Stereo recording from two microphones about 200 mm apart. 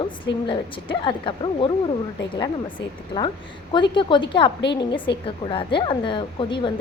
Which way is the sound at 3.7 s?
25° left (ahead or behind).